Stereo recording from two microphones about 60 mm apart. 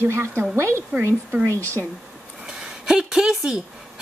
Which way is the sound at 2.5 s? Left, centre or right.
Centre.